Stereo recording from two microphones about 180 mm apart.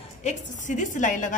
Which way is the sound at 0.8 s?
45° left (ahead or behind).